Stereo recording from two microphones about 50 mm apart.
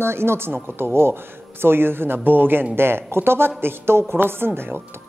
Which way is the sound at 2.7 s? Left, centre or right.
Right.